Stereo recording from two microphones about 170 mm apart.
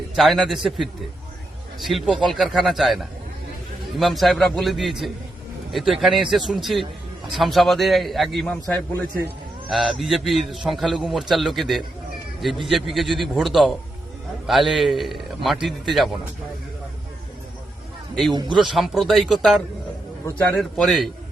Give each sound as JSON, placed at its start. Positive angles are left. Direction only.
{"t": 0.2, "sound": "a man's voice", "side_deg": 0}
{"t": 18.1, "sound": "speech", "side_deg": 0}
{"t": 18.3, "sound": "a man's voice", "side_deg": -25}
{"t": 18.6, "sound": "a man's voice", "side_deg": 0}